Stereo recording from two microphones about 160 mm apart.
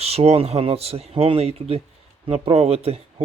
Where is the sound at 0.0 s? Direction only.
40° right (ahead or behind).